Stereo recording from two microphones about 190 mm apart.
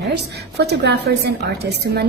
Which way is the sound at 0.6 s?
60° right (ahead or behind).